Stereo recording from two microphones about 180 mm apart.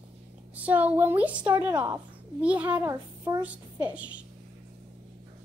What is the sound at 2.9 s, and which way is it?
Speech, 20° right (ahead or behind).